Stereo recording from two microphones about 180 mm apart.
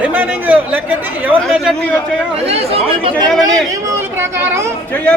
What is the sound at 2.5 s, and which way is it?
Speech, 35° right (ahead or behind).